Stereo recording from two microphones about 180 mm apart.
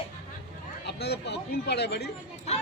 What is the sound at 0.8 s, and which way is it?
Chatter, 65° left (ahead or behind).